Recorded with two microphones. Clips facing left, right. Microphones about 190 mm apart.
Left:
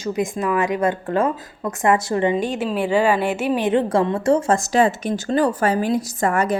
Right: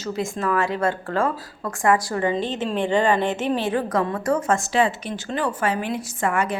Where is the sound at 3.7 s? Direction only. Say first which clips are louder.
Left 5 dB; 25° left (ahead or behind).